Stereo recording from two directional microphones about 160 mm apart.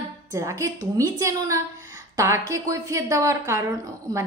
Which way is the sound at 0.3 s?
20° right (ahead or behind).